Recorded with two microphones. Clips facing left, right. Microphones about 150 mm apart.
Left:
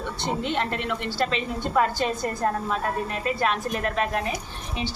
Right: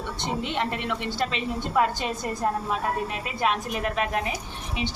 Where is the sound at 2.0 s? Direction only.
10° right (ahead or behind).